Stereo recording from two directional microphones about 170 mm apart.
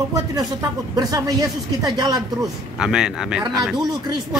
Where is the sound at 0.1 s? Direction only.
20° right (ahead or behind).